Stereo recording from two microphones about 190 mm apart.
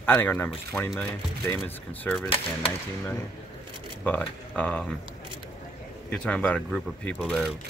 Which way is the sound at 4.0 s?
5° left (ahead or behind).